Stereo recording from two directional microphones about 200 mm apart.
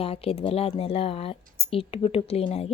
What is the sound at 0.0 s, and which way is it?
A woman's voice, 30° left (ahead or behind).